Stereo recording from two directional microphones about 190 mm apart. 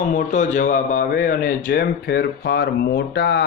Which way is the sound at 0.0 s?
45° left (ahead or behind).